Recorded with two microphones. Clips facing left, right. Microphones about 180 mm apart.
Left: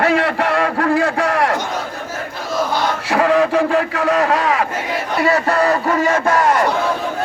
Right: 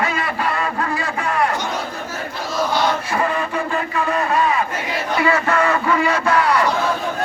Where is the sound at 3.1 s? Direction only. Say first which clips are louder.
Left 7 dB; 90° left.